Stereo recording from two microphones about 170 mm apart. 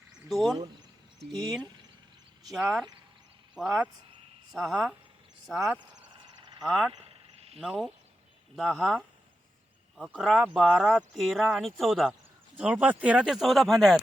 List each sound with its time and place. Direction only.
0.1 s frog: centre (ahead or behind)
1.3 s speech: centre (ahead or behind)
6.4 s a sound: 25° right (ahead or behind)
6.7 s speech: centre (ahead or behind)
7.0 s a sound: 35° right (ahead or behind)
7.6 s speech: 5° right (ahead or behind)
10.0 s speech: 5° right (ahead or behind)